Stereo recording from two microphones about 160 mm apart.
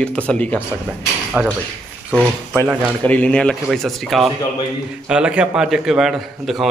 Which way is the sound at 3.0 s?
10° left (ahead or behind).